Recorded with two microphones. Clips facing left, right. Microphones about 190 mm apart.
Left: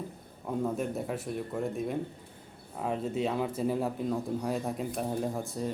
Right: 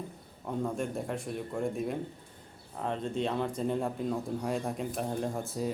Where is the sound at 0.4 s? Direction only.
5° left (ahead or behind).